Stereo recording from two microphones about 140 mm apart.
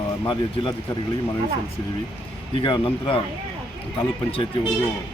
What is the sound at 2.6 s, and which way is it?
Speech, 35° left (ahead or behind).